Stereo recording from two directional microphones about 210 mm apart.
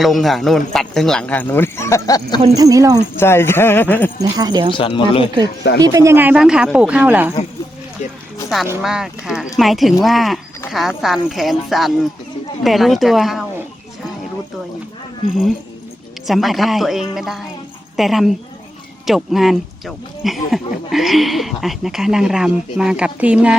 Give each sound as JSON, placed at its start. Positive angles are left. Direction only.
{"t": 0.0, "sound": "speech", "side_deg": 0}
{"t": 2.6, "sound": "speech", "side_deg": -15}
{"t": 3.2, "sound": "a man's voice", "side_deg": 10}
{"t": 4.2, "sound": "speech", "side_deg": -20}
{"t": 4.7, "sound": "speech", "side_deg": 25}
{"t": 5.8, "sound": "speech", "side_deg": -15}
{"t": 8.8, "sound": "speech", "side_deg": 0}
{"t": 16.2, "sound": "a woman's voice", "side_deg": 0}